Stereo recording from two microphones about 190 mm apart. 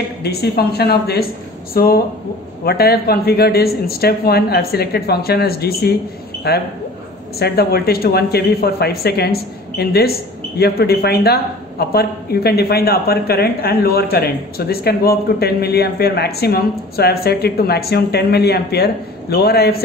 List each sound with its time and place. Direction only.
0.2 s a woman's voice: 55° left (ahead or behind)